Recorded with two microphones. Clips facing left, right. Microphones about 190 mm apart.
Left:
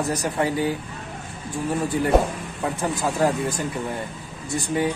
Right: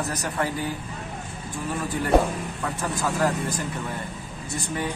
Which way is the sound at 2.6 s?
20° left (ahead or behind).